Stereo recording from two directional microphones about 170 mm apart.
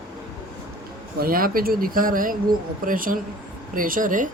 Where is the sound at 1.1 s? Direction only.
60° right (ahead or behind).